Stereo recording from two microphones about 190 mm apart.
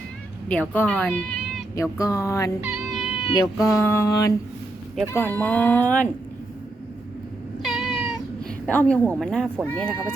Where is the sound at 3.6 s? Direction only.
15° left (ahead or behind).